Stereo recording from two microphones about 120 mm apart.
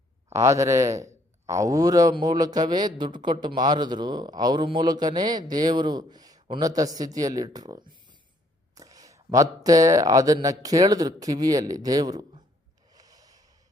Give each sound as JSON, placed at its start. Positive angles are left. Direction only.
{"t": 0.3, "sound": "a man's voice", "side_deg": -25}
{"t": 12.9, "sound": "gasp", "side_deg": -30}